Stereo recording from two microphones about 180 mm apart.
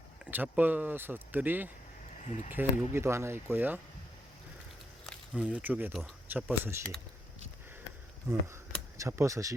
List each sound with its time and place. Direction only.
0.3 s speech: 10° right (ahead or behind)
2.2 s speech: 40° left (ahead or behind)
2.5 s speech: 10° right (ahead or behind)
5.3 s speech: 5° right (ahead or behind)
9.0 s speech: 15° right (ahead or behind)